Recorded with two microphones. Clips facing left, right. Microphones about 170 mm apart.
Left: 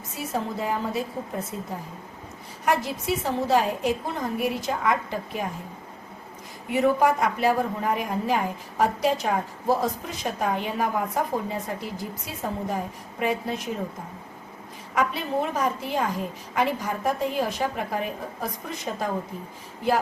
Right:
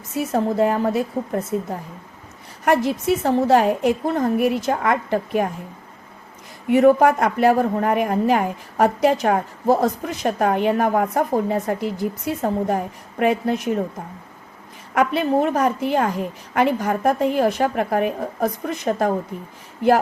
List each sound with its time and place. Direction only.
0.3 s a woman's voice: 60° right (ahead or behind)
6.7 s a woman's voice: 55° right (ahead or behind)
14.9 s a woman's voice: 55° right (ahead or behind)